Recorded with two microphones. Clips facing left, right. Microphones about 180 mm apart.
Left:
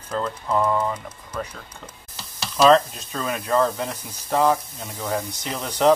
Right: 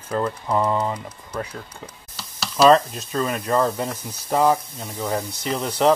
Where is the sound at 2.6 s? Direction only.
Centre (ahead or behind).